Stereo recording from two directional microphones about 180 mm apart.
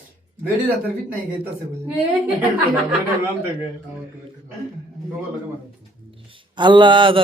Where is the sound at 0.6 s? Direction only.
10° right (ahead or behind).